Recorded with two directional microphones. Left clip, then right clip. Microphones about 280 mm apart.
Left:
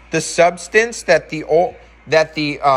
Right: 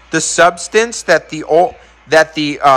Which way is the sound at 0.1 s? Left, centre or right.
Centre.